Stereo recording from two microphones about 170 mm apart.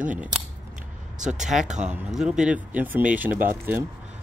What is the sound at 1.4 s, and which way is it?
Speech, 5° right (ahead or behind).